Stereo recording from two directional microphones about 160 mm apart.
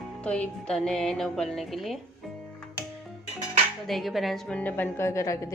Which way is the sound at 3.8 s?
Centre (ahead or behind).